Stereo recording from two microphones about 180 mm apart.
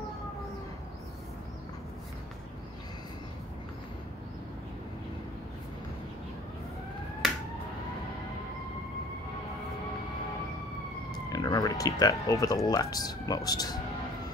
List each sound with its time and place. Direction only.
11.2 s speech: 20° left (ahead or behind)